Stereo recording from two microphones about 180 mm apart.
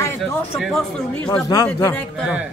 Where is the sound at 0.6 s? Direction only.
Centre (ahead or behind).